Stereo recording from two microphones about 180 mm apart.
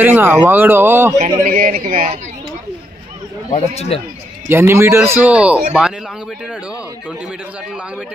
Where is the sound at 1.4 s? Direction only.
50° right (ahead or behind).